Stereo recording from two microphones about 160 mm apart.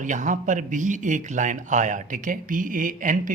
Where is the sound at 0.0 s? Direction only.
50° right (ahead or behind).